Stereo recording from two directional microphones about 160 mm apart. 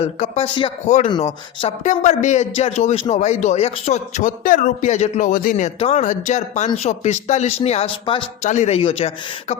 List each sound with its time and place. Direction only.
0.0 s speech: 40° left (ahead or behind)
0.9 s a man's voice: 45° left (ahead or behind)
8.4 s speech: 45° left (ahead or behind)